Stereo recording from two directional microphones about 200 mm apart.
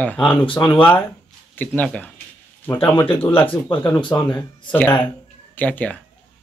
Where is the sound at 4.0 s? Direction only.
20° left (ahead or behind).